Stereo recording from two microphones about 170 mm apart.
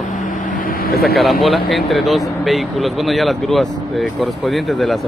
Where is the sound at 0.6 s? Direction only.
60° left (ahead or behind).